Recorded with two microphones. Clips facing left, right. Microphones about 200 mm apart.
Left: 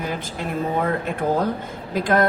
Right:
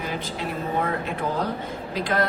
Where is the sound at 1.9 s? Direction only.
50° left (ahead or behind).